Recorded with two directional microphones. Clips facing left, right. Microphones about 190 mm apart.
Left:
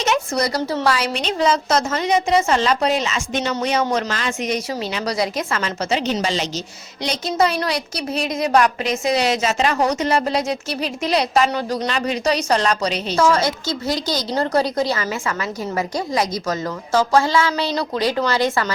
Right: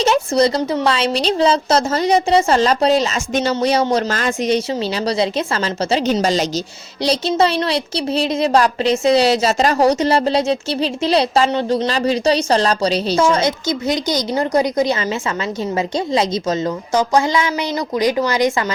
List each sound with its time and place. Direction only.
0.0 s a woman's voice: 30° right (ahead or behind)
7.0 s a woman's voice: 30° right (ahead or behind)
13.1 s a woman's voice: 20° right (ahead or behind)